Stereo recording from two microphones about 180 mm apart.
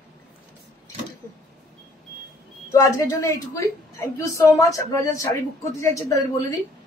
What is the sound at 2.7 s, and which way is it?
A woman's voice, 20° left (ahead or behind).